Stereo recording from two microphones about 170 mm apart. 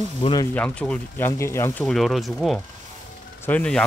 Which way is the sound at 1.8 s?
Centre (ahead or behind).